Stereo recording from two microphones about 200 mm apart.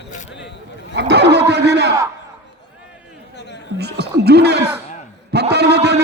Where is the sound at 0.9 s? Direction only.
55° right (ahead or behind).